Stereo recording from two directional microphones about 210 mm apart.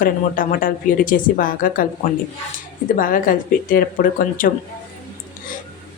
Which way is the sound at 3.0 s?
40° left (ahead or behind).